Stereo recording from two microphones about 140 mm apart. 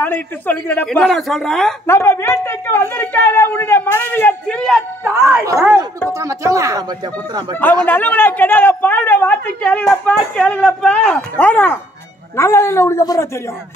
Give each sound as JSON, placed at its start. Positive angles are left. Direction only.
{"t": 0.0, "sound": "a woman's voice", "side_deg": 15}
{"t": 1.9, "sound": "a woman's voice", "side_deg": 20}
{"t": 5.0, "sound": "speech", "side_deg": -15}
{"t": 7.8, "sound": "a woman's voice", "side_deg": 10}